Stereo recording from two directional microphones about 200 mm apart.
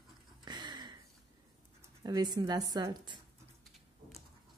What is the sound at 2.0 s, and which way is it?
A woman's voice, 20° right (ahead or behind).